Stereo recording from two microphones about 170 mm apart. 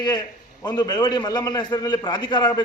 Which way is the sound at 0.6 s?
25° left (ahead or behind).